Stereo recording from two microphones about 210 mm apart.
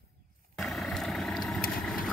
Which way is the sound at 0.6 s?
Centre (ahead or behind).